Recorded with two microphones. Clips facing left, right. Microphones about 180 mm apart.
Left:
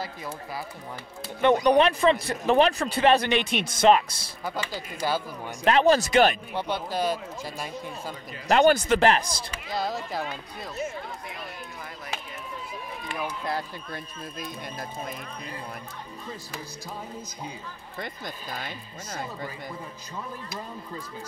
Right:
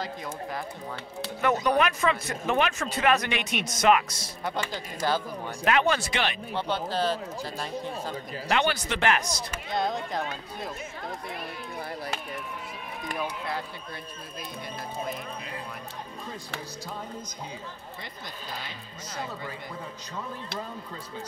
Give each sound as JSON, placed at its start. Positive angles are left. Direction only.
{"t": 1.4, "sound": "speech", "side_deg": 30}
{"t": 4.5, "sound": "speech", "side_deg": 10}
{"t": 5.7, "sound": "speech", "side_deg": 35}
{"t": 6.5, "sound": "speech", "side_deg": 10}
{"t": 8.5, "sound": "speech", "side_deg": 40}
{"t": 9.8, "sound": "speech", "side_deg": 5}